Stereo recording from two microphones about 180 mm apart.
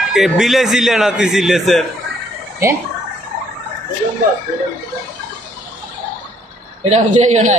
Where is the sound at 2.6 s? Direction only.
15° right (ahead or behind).